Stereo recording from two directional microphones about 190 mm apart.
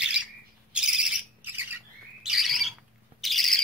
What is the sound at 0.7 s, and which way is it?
Bird, 5° right (ahead or behind).